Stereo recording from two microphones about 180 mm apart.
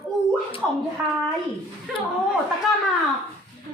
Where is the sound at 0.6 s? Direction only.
5° left (ahead or behind).